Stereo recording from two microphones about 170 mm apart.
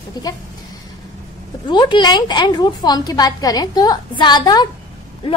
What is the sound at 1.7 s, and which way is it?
A woman's voice, 25° left (ahead or behind).